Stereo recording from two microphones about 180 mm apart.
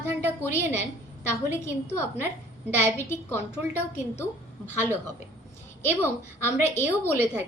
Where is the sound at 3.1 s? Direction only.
15° left (ahead or behind).